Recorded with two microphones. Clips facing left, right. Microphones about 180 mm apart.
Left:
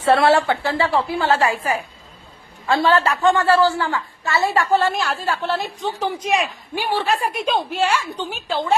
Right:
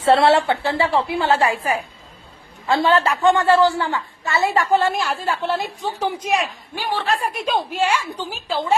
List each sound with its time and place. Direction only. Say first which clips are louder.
0.0 s a woman's voice: right 1 dB; 25° right (ahead or behind); by 8.6 s 5° right (ahead or behind)